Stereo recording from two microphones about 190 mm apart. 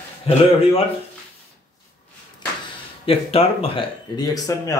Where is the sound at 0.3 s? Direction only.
30° left (ahead or behind).